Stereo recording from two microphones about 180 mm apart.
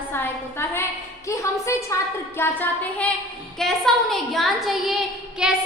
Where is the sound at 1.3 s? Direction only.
15° left (ahead or behind).